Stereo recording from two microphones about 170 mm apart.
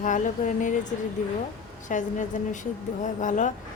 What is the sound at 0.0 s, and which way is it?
A woman's voice, 50° left (ahead or behind).